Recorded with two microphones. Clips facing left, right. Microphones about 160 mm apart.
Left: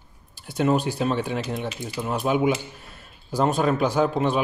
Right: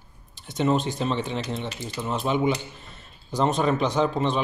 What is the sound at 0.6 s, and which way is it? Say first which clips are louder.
Speech: left 2 dB; 5° left (ahead or behind).